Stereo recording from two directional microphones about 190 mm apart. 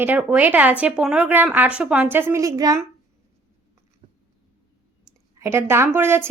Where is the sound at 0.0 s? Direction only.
10° right (ahead or behind).